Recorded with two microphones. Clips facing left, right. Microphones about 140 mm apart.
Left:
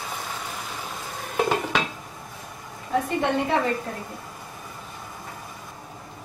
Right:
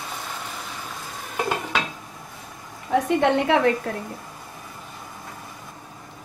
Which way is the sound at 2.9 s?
70° right (ahead or behind).